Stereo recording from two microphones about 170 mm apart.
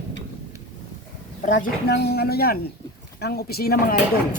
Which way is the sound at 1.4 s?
50° left (ahead or behind).